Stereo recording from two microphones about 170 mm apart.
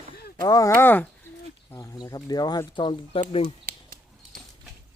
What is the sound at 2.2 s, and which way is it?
Speech, 25° left (ahead or behind).